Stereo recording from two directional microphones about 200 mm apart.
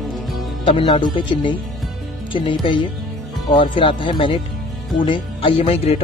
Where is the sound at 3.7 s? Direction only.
25° left (ahead or behind).